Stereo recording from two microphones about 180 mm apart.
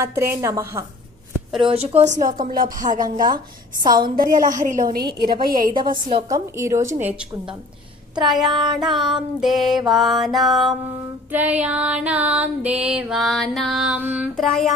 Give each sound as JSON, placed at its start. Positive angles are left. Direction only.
{"t": 0.0, "sound": "music", "side_deg": -15}
{"t": 1.7, "sound": "speech", "side_deg": -35}
{"t": 4.9, "sound": "speech", "side_deg": -60}
{"t": 6.0, "sound": "a woman's voice", "side_deg": -30}
{"t": 6.3, "sound": "music", "side_deg": -15}
{"t": 8.4, "sound": "child singing", "side_deg": -25}
{"t": 9.4, "sound": "music", "side_deg": 0}
{"t": 14.3, "sound": "music", "side_deg": 0}